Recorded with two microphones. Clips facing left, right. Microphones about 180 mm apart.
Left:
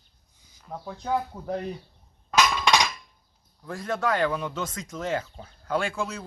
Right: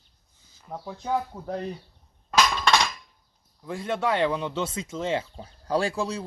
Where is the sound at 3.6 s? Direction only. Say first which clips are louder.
Right 1 dB; 20° right (ahead or behind).